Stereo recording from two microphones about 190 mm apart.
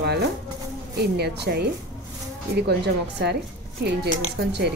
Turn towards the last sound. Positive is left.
turn(degrees=-60)  # may be behind; listen again after turning